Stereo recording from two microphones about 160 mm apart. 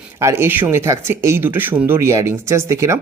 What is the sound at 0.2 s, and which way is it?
Speech, 15° right (ahead or behind).